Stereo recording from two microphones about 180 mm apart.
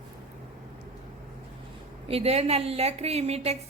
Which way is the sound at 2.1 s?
35° right (ahead or behind).